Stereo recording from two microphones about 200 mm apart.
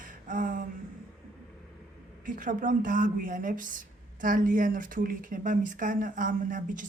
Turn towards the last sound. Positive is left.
turn(degrees=-40)  # may be behind; listen again after turning